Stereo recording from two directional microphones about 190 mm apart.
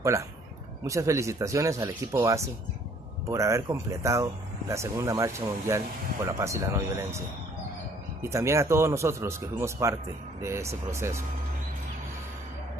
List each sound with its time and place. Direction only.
0.8 s speech: 15° right (ahead or behind)